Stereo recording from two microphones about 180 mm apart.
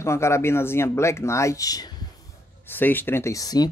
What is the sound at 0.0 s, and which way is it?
Speech, 15° left (ahead or behind).